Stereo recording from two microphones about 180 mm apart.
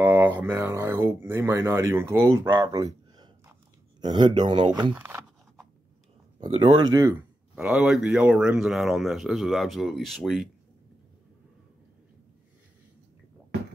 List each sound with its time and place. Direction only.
0.0 s speech: 10° right (ahead or behind)
4.9 s speech: 10° right (ahead or behind)
6.4 s speech: 35° right (ahead or behind)
6.9 s speech: 15° right (ahead or behind)
7.5 s speech: 5° right (ahead or behind)